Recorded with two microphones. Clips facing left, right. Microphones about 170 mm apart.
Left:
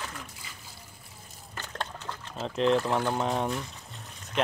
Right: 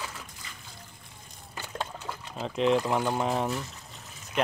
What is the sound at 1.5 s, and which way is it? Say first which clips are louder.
Liquid: right 1 dB; 10° right (ahead or behind).